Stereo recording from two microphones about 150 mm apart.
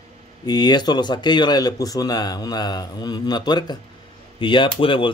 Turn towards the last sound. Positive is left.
turn(degrees=35)  # may be behind; listen again after turning